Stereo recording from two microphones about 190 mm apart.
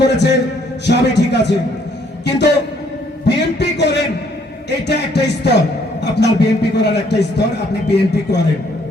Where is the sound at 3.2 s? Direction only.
65° left (ahead or behind).